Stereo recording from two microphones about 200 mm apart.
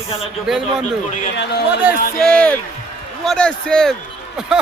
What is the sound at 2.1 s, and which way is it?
Speech, 5° left (ahead or behind).